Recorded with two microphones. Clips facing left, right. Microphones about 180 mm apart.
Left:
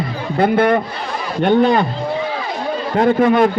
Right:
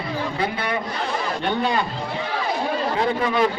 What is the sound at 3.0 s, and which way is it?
Speech, 50° left (ahead or behind).